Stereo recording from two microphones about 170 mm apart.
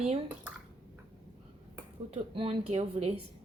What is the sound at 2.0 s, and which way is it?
Speech, 35° right (ahead or behind).